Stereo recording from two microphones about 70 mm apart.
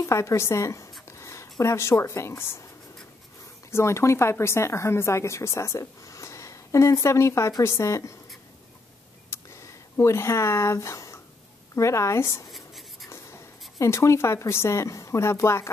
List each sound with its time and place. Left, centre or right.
0.0 s speech: left
3.7 s speech: left
9.3 s a sound: left
11.7 s speech: left
12.4 s a sound: centre
13.1 s speech: left